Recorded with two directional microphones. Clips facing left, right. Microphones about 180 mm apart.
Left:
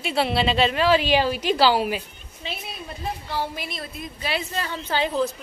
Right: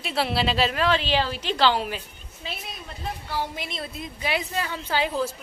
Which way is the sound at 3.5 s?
25° right (ahead or behind).